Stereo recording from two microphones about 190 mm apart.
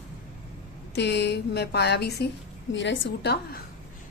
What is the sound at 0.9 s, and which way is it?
A woman's voice, 65° left (ahead or behind).